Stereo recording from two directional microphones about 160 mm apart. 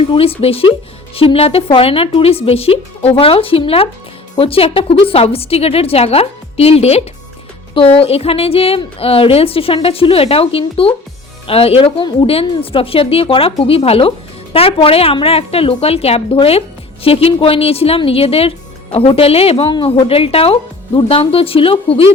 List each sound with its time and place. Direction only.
0.1 s a woman's voice: 35° left (ahead or behind)